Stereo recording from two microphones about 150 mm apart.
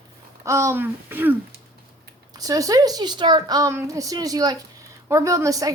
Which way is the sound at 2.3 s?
25° right (ahead or behind).